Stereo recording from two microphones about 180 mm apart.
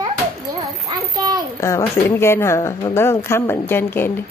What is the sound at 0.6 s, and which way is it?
Speech, 20° right (ahead or behind).